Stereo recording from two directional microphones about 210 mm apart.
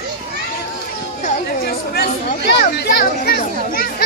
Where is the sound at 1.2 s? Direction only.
45° left (ahead or behind).